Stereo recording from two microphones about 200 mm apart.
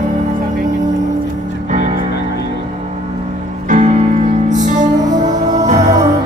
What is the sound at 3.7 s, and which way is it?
Music, 40° right (ahead or behind).